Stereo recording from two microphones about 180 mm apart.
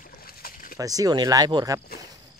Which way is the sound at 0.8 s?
20° right (ahead or behind).